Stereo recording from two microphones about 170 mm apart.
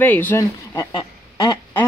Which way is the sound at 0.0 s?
10° left (ahead or behind).